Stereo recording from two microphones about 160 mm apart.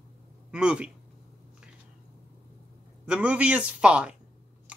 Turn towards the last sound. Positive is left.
turn(degrees=-5)  # may be behind; listen again after turning